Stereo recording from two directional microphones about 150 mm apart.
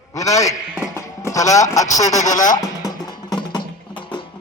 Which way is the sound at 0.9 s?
20° left (ahead or behind).